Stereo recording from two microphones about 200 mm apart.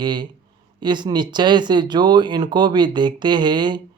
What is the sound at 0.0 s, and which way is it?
Speech, 20° right (ahead or behind).